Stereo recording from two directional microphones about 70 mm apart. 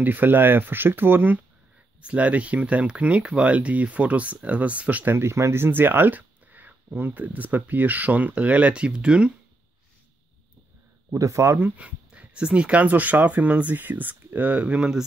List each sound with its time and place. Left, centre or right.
0.0 s speech: right
2.0 s speech: centre
5.1 s speech: right; by 9.3 s centre
11.1 s speech: right
11.8 s speech: centre